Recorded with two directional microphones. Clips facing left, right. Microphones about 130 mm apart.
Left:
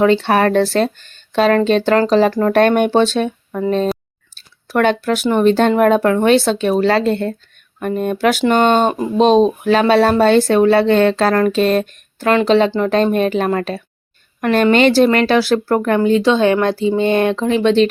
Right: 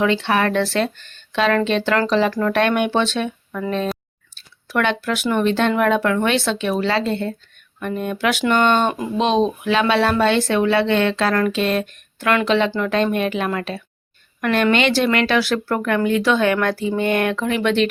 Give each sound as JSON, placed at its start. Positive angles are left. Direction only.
{"t": 0.0, "sound": "speech", "side_deg": 40}